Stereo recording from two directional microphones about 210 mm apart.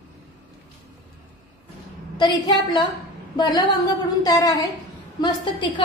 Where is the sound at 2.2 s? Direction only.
20° left (ahead or behind).